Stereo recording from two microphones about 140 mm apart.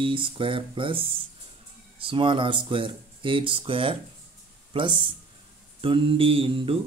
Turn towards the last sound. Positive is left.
turn(degrees=-40)  # may be behind; listen again after turning